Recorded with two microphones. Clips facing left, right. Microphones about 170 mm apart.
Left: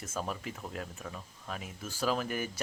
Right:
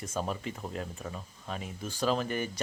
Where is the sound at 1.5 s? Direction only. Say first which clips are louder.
Right 3 dB; 5° left (ahead or behind).